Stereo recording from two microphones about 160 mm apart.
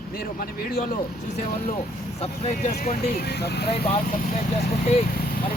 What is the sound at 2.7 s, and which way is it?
Speech, 70° left (ahead or behind).